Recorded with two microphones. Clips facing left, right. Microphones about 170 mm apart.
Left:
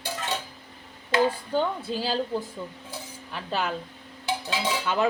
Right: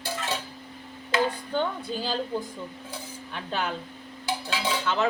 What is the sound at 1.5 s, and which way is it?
Speech, 5° left (ahead or behind).